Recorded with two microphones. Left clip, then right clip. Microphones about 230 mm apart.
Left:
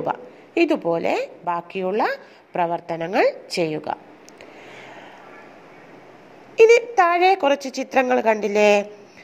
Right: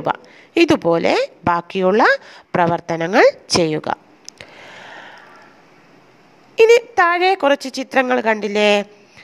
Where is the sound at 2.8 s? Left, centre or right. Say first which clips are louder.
Right 7 dB; right.